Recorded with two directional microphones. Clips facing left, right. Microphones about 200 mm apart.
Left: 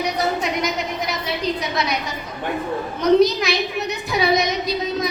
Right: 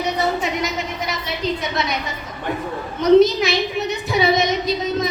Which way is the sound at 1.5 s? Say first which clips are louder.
Even; centre (ahead or behind).